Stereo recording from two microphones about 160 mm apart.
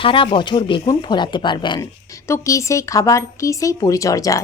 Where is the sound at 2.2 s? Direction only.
20° left (ahead or behind).